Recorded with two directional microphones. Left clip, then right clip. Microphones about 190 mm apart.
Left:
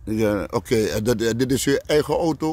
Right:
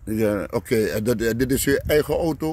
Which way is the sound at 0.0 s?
Centre (ahead or behind).